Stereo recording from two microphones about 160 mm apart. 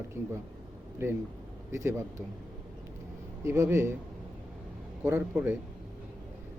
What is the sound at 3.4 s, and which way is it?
Speech, 15° right (ahead or behind).